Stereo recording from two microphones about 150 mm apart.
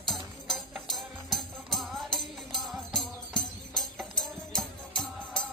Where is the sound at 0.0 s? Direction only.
Centre (ahead or behind).